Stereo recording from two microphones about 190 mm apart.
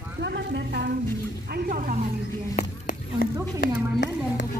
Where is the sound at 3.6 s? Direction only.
70° left (ahead or behind).